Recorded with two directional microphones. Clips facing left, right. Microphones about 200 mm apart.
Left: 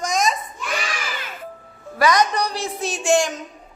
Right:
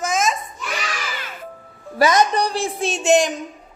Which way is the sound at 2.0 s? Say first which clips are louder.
Right 2 dB; 25° right (ahead or behind).